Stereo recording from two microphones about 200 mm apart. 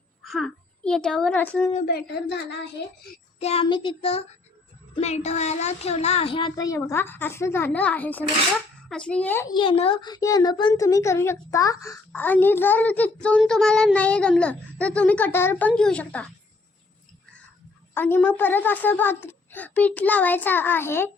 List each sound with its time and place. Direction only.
0.3 s a child's voice: centre (ahead or behind)
1.7 s a woman's voice: 45° left (ahead or behind)
3.4 s child singing: 30° left (ahead or behind)
4.9 s a child's voice: 35° left (ahead or behind); by 9.5 s 10° left (ahead or behind)
9.5 s a child's voice: 25° left (ahead or behind); by 16.3 s 5° left (ahead or behind)
17.9 s a child's voice: 10° left (ahead or behind)